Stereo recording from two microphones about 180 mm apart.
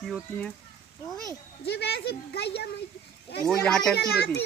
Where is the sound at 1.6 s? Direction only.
65° left (ahead or behind).